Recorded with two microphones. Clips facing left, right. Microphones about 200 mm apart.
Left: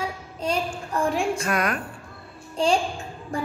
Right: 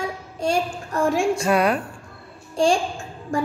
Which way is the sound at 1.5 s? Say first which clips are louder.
Right 9 dB; 30° right (ahead or behind).